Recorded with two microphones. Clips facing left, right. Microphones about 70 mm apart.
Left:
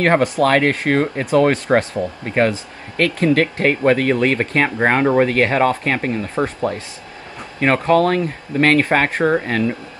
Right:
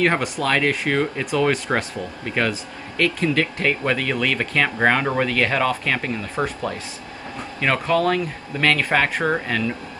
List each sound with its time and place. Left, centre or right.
0.0 s speech: left